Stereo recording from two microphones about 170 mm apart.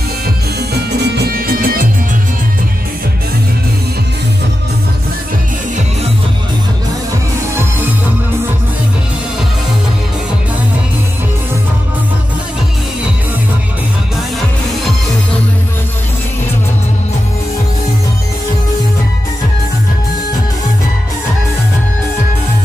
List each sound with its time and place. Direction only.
1.1 s music: 65° right (ahead or behind)